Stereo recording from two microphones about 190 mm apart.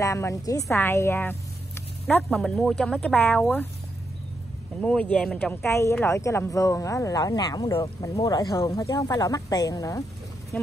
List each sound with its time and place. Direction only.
0.0 s speech: 15° left (ahead or behind)
4.8 s speech: 5° left (ahead or behind)